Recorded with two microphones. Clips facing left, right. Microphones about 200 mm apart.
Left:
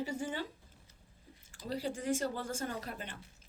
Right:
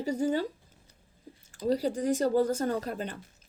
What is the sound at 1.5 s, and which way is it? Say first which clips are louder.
Speech: right 10 dB; 40° right (ahead or behind).